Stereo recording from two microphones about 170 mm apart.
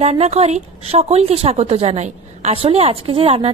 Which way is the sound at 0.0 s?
40° right (ahead or behind).